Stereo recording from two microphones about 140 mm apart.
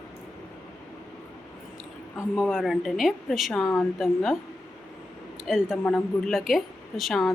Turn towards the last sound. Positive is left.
turn(degrees=0)  # may be behind; listen again after turning